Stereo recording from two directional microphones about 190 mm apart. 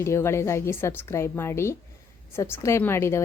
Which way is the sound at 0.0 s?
15° left (ahead or behind).